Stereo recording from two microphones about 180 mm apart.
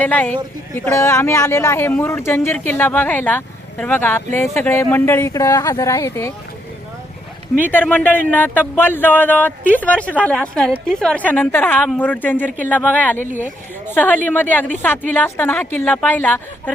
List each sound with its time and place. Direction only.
0.0 s speech: 10° left (ahead or behind)
7.6 s a woman's voice: 10° left (ahead or behind)